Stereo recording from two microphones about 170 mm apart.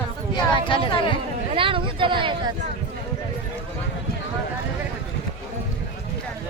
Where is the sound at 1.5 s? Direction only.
30° right (ahead or behind).